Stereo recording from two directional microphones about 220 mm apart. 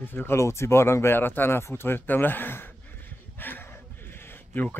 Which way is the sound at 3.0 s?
10° left (ahead or behind).